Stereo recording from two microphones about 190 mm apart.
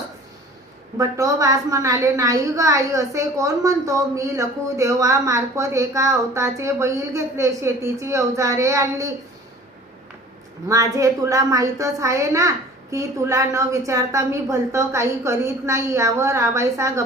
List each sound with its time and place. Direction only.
0.9 s a woman's voice: 15° right (ahead or behind)
10.7 s a woman's voice: 15° right (ahead or behind)